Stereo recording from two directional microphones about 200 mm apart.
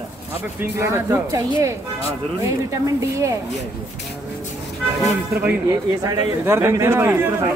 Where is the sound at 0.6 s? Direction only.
15° right (ahead or behind).